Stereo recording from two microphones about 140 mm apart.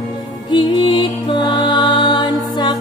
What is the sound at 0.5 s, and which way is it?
Music, 35° left (ahead or behind).